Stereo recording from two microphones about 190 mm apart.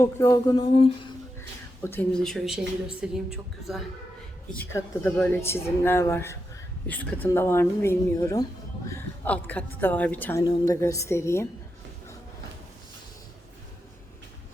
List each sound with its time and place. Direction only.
0.0 s speech: 20° left (ahead or behind)
1.8 s speech: 10° left (ahead or behind)
4.5 s a woman's voice: 10° left (ahead or behind)